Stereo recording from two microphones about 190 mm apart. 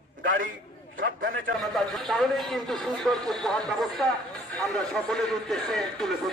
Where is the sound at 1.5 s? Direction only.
Centre (ahead or behind).